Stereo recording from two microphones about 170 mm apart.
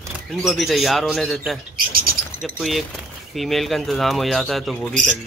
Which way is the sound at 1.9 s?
60° right (ahead or behind).